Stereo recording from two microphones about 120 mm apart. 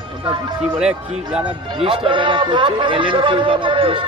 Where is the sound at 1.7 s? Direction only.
45° right (ahead or behind).